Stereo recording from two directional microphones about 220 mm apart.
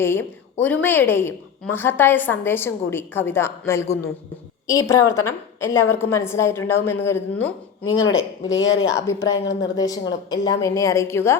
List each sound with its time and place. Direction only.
0.0 s a woman's voice: 10° left (ahead or behind)
7.9 s speech: 60° left (ahead or behind)
9.0 s a woman's voice: 15° left (ahead or behind)
9.4 s speech: 55° left (ahead or behind)
9.7 s a woman's voice: 15° left (ahead or behind)